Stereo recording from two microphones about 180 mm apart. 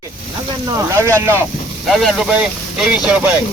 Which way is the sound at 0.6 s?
15° right (ahead or behind).